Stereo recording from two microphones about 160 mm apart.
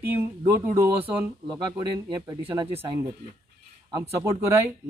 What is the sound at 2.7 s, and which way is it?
Speech, 40° right (ahead or behind).